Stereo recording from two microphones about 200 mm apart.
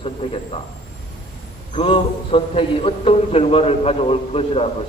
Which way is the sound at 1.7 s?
25° left (ahead or behind).